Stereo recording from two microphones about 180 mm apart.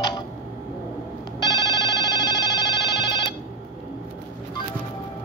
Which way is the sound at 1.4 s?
25° left (ahead or behind).